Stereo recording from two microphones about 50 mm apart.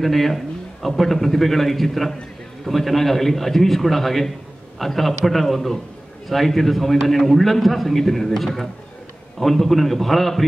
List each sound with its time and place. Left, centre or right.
0.0 s a man's voice: centre